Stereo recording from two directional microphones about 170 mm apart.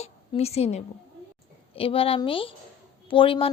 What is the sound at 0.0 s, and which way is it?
A woman's voice, 40° left (ahead or behind).